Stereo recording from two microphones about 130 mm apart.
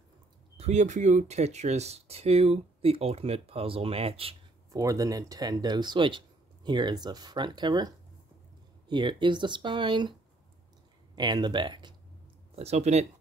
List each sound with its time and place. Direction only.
0.6 s speech: 60° right (ahead or behind); by 4.4 s 45° right (ahead or behind)
4.6 s speech: 25° right (ahead or behind)
11.1 s speech: 35° right (ahead or behind)
12.5 s speech: 55° right (ahead or behind)